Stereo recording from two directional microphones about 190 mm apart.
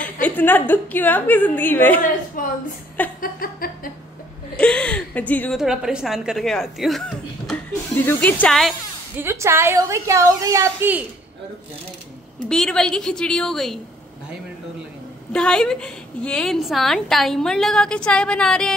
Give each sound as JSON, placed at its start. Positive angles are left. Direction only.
{"t": 0.0, "sound": "a woman's voice", "side_deg": 10}
{"t": 2.4, "sound": "a sound", "side_deg": 45}
{"t": 4.6, "sound": "speech", "side_deg": 5}
{"t": 5.6, "sound": "a woman's voice", "side_deg": -5}
{"t": 9.1, "sound": "a woman's voice", "side_deg": -15}
{"t": 12.4, "sound": "a woman's voice", "side_deg": 5}
{"t": 15.3, "sound": "a woman's voice", "side_deg": 5}